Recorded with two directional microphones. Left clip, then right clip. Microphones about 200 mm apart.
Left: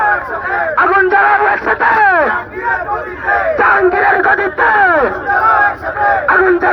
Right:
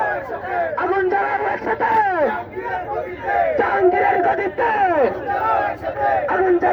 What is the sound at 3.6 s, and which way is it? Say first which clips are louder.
Crowd: left 8 dB; 45° right (ahead or behind).